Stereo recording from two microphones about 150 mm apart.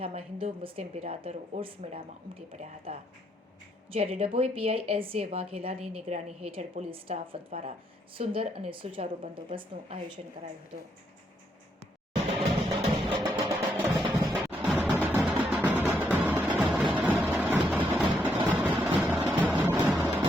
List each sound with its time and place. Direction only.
0.0 s a woman's voice: 40° right (ahead or behind)
10.2 s speech: 50° right (ahead or behind)
12.6 s music: 30° right (ahead or behind)
13.8 s music: 15° right (ahead or behind)
17.0 s vehicle: 10° right (ahead or behind)
17.7 s music: 10° right (ahead or behind)
19.3 s vehicle: 5° right (ahead or behind)